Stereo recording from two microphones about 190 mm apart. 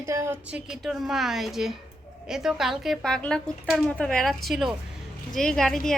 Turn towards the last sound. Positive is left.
turn(degrees=0)  # may be behind; listen again after turning